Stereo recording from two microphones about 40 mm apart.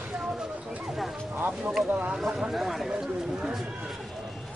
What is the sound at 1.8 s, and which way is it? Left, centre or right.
Speech, right.